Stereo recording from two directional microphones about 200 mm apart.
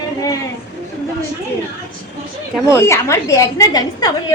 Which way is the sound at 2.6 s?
15° left (ahead or behind).